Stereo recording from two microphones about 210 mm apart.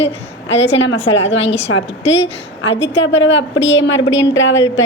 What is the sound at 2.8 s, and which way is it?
A woman's voice, 60° left (ahead or behind).